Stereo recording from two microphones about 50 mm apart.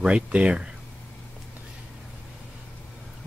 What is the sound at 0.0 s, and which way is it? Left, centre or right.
Speech, right.